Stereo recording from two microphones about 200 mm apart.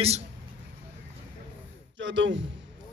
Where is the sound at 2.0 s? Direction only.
65° right (ahead or behind).